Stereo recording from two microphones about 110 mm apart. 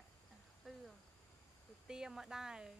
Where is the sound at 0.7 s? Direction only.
Centre (ahead or behind).